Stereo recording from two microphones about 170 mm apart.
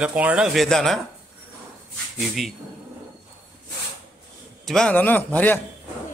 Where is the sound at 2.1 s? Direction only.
Centre (ahead or behind).